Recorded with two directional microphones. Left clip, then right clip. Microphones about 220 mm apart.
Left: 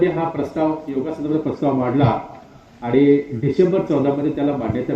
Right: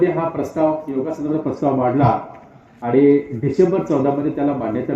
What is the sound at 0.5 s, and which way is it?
A man's voice, 50° left (ahead or behind).